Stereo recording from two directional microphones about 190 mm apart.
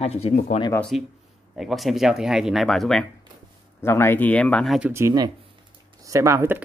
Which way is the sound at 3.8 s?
15° left (ahead or behind).